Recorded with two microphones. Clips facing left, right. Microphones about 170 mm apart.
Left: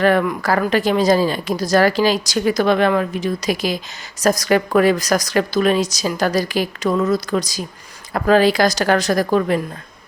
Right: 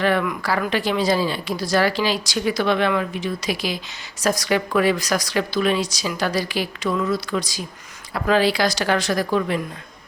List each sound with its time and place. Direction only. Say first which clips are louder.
0.0 s speech: left 5 dB; 45° left (ahead or behind)